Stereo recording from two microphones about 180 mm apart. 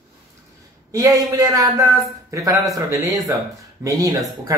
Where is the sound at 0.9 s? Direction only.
20° right (ahead or behind).